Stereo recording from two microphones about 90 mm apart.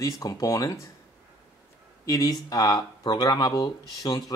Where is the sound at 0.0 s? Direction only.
40° left (ahead or behind).